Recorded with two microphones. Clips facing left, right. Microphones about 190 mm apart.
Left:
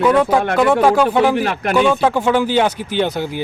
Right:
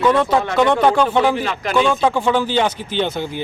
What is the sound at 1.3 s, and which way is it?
Speech, 55° left (ahead or behind).